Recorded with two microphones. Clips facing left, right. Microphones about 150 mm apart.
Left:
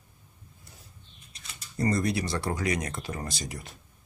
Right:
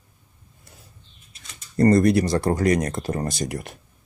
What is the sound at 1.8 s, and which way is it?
Speech, 55° right (ahead or behind).